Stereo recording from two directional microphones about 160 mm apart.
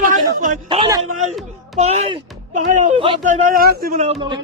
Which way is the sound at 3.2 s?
55° right (ahead or behind).